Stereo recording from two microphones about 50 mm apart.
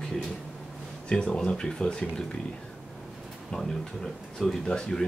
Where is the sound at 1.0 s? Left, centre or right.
Centre.